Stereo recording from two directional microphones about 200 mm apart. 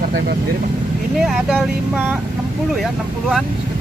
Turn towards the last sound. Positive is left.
turn(degrees=0)  # may be behind; listen again after turning